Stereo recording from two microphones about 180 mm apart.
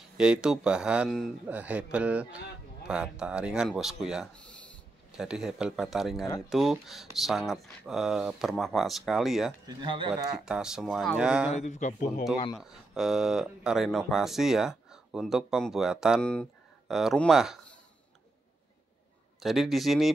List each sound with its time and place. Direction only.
0.2 s speech: 5° right (ahead or behind)
9.7 s speech: 25° right (ahead or behind)
10.3 s speech: 5° right (ahead or behind)
11.5 s speech: 40° left (ahead or behind)
12.5 s speech: centre (ahead or behind)
19.4 s speech: centre (ahead or behind)